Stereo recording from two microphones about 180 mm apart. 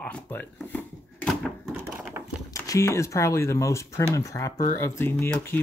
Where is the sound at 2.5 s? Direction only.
15° left (ahead or behind).